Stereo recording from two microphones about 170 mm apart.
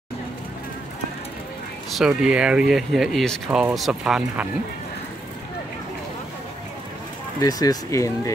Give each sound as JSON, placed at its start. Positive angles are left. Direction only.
{"t": 2.0, "sound": "speech", "side_deg": -5}
{"t": 7.3, "sound": "speech", "side_deg": 20}